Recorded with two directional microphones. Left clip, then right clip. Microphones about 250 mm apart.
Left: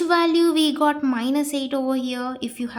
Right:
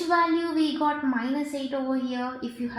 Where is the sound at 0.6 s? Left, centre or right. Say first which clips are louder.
Left 5 dB; left.